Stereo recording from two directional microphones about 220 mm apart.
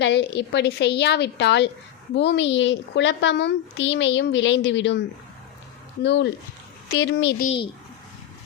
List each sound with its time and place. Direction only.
0.0 s a woman's voice: 50° left (ahead or behind)
7.4 s speech: 25° left (ahead or behind)